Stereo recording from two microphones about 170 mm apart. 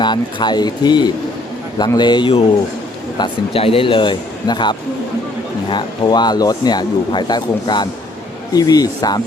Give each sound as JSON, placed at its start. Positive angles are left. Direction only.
{"t": 0.0, "sound": "speech", "side_deg": 25}